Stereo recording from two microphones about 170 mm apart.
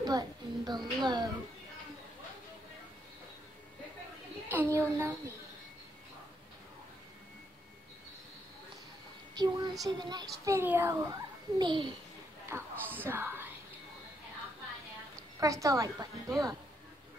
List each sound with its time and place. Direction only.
0.0 s a child's voice: 25° right (ahead or behind)
4.5 s a woman's voice: 15° right (ahead or behind)
9.4 s a child's voice: 25° right (ahead or behind)
12.4 s speech: 15° right (ahead or behind)
15.4 s a child's voice: 20° right (ahead or behind)